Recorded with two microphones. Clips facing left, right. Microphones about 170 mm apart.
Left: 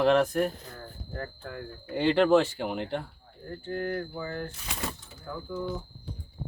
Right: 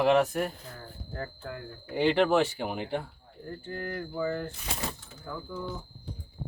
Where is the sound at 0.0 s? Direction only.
5° right (ahead or behind).